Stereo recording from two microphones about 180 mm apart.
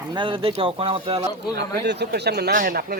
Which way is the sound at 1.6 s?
70° right (ahead or behind).